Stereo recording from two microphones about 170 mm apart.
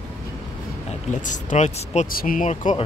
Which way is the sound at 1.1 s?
50° left (ahead or behind).